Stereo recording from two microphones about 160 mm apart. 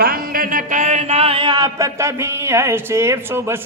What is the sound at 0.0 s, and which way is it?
A man's voice, 65° right (ahead or behind).